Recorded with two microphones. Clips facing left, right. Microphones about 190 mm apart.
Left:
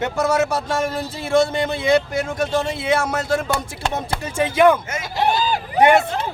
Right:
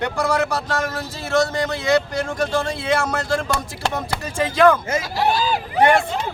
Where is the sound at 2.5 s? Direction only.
25° left (ahead or behind).